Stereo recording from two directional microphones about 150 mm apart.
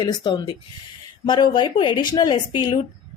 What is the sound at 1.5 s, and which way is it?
Speech, 30° left (ahead or behind).